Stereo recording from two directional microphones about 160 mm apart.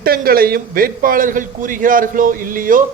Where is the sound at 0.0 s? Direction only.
65° right (ahead or behind).